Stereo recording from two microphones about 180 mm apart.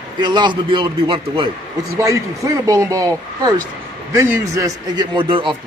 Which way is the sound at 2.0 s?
15° right (ahead or behind).